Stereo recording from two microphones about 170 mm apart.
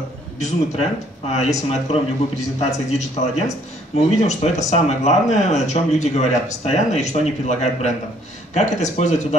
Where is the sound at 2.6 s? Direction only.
40° left (ahead or behind).